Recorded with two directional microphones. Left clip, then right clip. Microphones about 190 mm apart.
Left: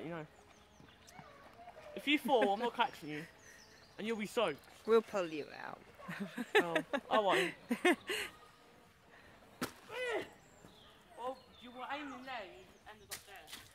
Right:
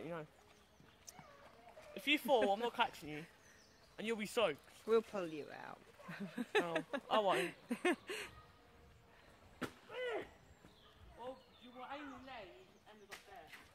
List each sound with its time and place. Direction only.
0.0 s a sound: 40° right (ahead or behind)
2.0 s speech: 50° right (ahead or behind)
4.8 s speech: 10° left (ahead or behind)
7.1 s speech: 45° right (ahead or behind)
7.3 s speech: 5° left (ahead or behind)
9.6 s a sound: 40° left (ahead or behind)